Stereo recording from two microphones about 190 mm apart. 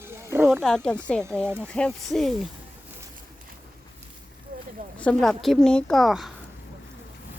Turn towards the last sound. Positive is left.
turn(degrees=0)  # may be behind; listen again after turning